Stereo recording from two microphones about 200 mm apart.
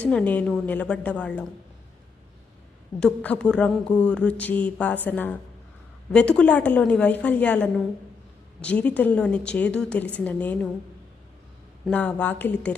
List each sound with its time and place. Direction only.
0.0 s speech: 5° left (ahead or behind)
3.0 s a woman's voice: 5° left (ahead or behind)
11.9 s a woman's voice: 5° left (ahead or behind)